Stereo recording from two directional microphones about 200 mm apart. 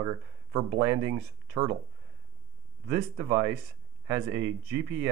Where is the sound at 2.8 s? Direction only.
15° right (ahead or behind).